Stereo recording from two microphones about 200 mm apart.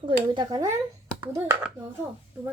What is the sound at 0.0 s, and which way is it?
Speech, 20° right (ahead or behind).